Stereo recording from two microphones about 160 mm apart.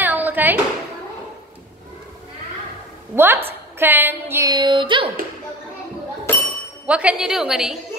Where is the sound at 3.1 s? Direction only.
15° right (ahead or behind).